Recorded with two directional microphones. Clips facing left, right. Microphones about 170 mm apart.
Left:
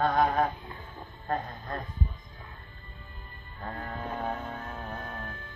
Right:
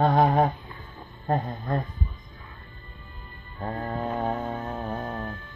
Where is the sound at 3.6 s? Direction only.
30° right (ahead or behind).